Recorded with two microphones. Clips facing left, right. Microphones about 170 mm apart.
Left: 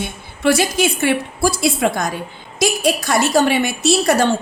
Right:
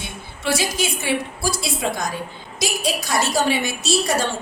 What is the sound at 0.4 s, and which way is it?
A woman's voice, 60° left (ahead or behind).